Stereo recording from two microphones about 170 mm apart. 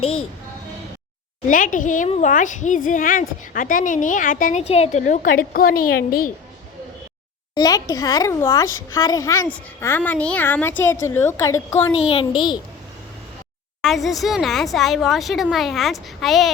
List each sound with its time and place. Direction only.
1.5 s a woman's voice: 50° left (ahead or behind)
4.7 s a woman's voice: 40° left (ahead or behind); by 6.3 s 55° left (ahead or behind)
7.5 s a child's voice: 20° left (ahead or behind)
12.1 s a woman's voice: 30° left (ahead or behind)
13.8 s a woman's voice: centre (ahead or behind)